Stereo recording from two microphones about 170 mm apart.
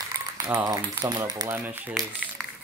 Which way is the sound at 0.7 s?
20° right (ahead or behind).